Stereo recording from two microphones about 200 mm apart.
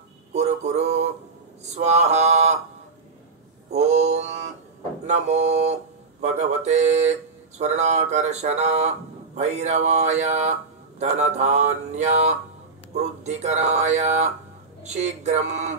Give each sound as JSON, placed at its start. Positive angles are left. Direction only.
{"t": 0.3, "sound": "music", "side_deg": -35}
{"t": 1.8, "sound": "mantra", "side_deg": -35}
{"t": 3.7, "sound": "mantra", "side_deg": -35}
{"t": 5.0, "sound": "speech", "side_deg": -35}